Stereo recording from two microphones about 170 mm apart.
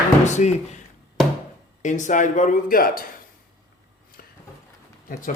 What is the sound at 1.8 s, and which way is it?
Speech, 45° left (ahead or behind).